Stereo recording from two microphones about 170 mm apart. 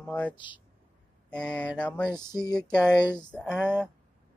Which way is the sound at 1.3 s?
10° left (ahead or behind).